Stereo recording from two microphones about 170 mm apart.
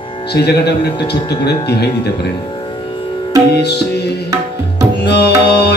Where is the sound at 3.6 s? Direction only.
75° left (ahead or behind).